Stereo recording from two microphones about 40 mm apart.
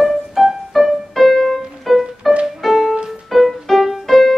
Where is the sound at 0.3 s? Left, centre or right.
Centre.